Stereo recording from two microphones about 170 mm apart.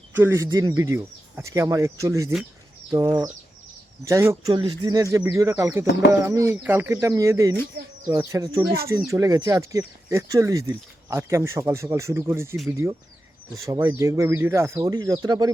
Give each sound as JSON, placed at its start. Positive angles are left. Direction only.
{"t": 0.1, "sound": "speech", "side_deg": -10}